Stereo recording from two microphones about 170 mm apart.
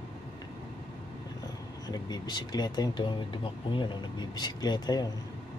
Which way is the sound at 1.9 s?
25° left (ahead or behind).